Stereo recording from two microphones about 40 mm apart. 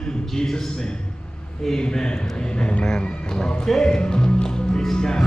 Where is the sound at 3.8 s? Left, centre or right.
Centre.